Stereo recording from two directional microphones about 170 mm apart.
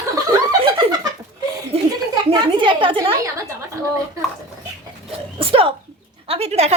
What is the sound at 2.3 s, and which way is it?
Speech, 30° right (ahead or behind).